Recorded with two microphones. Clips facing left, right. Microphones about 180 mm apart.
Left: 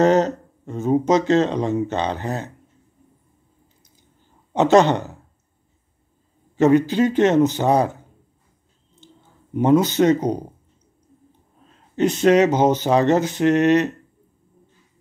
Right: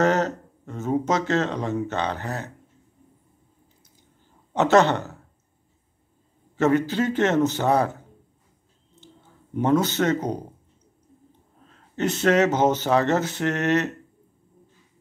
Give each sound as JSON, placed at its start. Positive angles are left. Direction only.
{"t": 0.0, "sound": "speech", "side_deg": 20}
{"t": 4.6, "sound": "speech", "side_deg": 15}
{"t": 6.5, "sound": "speech", "side_deg": 15}
{"t": 9.0, "sound": "speech", "side_deg": 15}
{"t": 11.9, "sound": "speech", "side_deg": 15}